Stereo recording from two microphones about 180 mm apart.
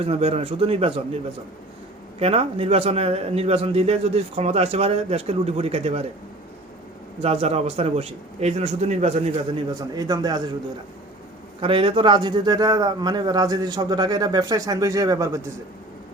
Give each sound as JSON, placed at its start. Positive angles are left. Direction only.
{"t": 0.0, "sound": "a man's voice", "side_deg": -35}
{"t": 7.2, "sound": "a man's voice", "side_deg": -35}
{"t": 9.9, "sound": "a man's voice", "side_deg": -20}
{"t": 11.6, "sound": "a man's voice", "side_deg": -30}